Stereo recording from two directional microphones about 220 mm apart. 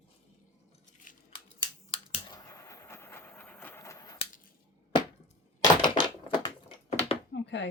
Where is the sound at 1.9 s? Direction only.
20° left (ahead or behind).